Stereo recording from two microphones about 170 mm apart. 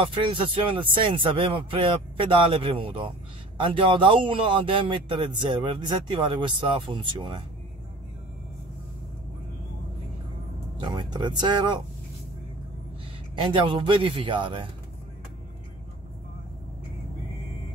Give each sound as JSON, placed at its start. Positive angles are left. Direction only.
{"t": 0.0, "sound": "speech", "side_deg": -30}
{"t": 10.8, "sound": "speech", "side_deg": -25}
{"t": 13.4, "sound": "speech", "side_deg": -30}